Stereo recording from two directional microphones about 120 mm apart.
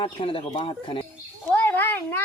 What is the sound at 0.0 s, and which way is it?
Speech, 50° left (ahead or behind).